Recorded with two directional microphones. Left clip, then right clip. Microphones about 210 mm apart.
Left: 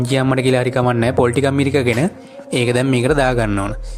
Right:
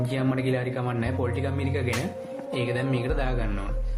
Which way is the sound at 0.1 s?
50° left (ahead or behind).